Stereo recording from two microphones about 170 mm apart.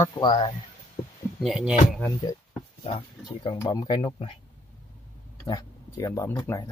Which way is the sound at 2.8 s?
30° left (ahead or behind).